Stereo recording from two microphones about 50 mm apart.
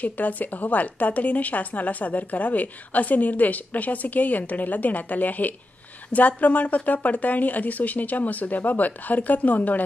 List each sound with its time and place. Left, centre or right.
0.0 s a woman's voice: left